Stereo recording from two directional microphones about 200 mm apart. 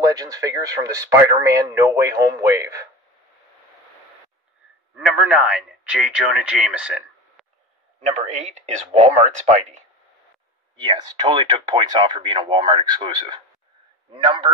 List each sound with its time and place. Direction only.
0.0 s speech: 20° right (ahead or behind)
4.9 s speech: 5° right (ahead or behind)
8.1 s speech: 35° right (ahead or behind)
10.8 s speech: 25° right (ahead or behind)